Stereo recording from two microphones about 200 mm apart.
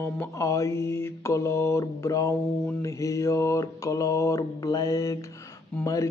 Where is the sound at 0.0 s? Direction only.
15° left (ahead or behind).